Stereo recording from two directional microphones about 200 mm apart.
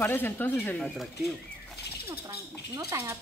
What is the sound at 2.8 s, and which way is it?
Speech, 15° right (ahead or behind).